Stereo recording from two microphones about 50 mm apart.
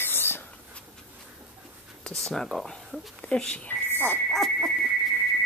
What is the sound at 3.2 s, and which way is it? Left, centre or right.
Speech, centre.